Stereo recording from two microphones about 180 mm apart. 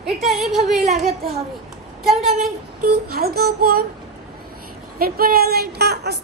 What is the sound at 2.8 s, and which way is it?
A woman's voice, 60° right (ahead or behind).